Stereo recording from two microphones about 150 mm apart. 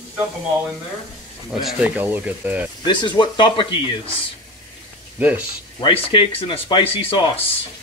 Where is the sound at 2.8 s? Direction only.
30° left (ahead or behind).